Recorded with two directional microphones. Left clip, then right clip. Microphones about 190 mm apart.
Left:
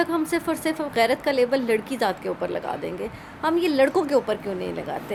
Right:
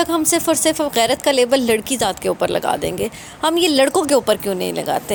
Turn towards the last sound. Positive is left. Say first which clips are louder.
# right 9 dB
turn(degrees=-45)  # may be behind; listen again after turning